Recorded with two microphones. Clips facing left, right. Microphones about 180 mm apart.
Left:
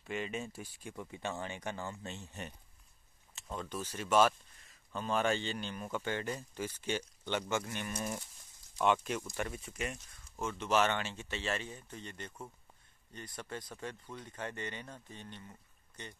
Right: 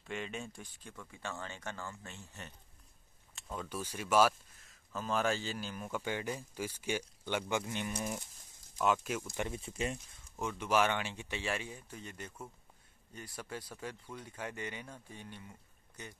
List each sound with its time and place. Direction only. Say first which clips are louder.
0.0 s speech: left 3 dB; centre (ahead or behind); by 2.5 s 20° left (ahead or behind)
3.3 s speech: even; 5° right (ahead or behind)
9.4 s speech: right 2 dB; 25° right (ahead or behind)
10.6 s speech: even; 10° right (ahead or behind)